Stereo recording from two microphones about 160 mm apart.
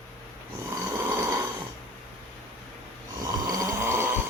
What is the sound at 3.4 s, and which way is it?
Snoring, 20° right (ahead or behind).